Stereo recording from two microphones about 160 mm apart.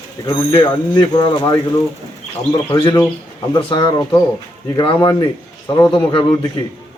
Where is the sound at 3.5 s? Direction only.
30° left (ahead or behind).